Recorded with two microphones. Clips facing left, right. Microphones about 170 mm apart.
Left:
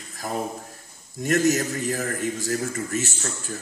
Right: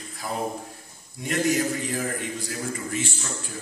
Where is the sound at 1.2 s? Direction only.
45° left (ahead or behind).